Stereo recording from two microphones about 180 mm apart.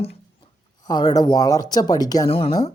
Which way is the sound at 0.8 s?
20° left (ahead or behind).